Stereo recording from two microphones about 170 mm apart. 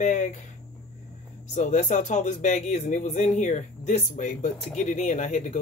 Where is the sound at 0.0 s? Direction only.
45° left (ahead or behind).